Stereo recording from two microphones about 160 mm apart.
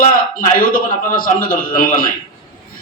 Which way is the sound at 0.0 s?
60° left (ahead or behind).